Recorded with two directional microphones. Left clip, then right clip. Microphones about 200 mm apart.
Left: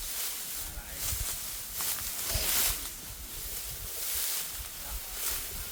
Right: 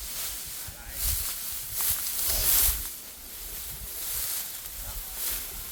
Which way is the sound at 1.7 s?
25° right (ahead or behind).